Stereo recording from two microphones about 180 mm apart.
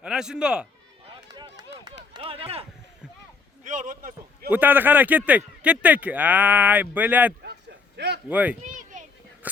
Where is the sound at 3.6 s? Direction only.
45° right (ahead or behind).